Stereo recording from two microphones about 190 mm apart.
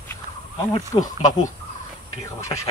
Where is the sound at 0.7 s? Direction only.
20° left (ahead or behind).